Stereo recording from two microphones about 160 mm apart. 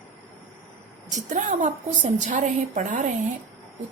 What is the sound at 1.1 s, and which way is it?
A woman's voice, 50° right (ahead or behind).